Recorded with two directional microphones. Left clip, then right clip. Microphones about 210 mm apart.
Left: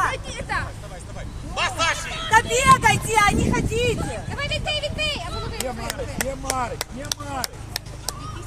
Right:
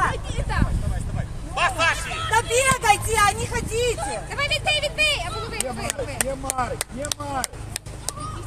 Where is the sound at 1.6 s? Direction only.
35° right (ahead or behind).